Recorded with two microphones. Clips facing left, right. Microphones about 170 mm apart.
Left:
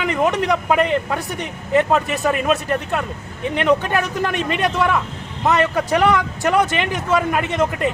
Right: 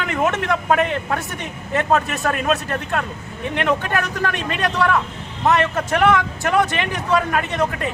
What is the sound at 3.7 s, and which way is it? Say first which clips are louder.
Speech: left 4 dB; 15° left (ahead or behind).